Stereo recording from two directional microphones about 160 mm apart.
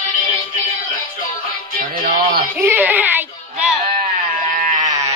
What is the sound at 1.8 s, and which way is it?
Music, 65° right (ahead or behind).